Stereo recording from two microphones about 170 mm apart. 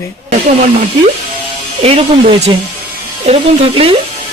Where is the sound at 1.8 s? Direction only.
35° right (ahead or behind).